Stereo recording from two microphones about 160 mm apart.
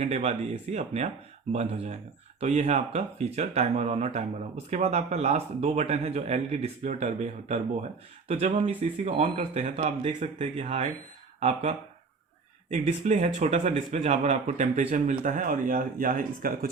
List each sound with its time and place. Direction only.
0.0 s speech: 45° right (ahead or behind)
9.6 s speech: 50° right (ahead or behind)
10.6 s speech: 40° right (ahead or behind)
12.7 s speech: 45° right (ahead or behind); by 16.6 s 65° right (ahead or behind)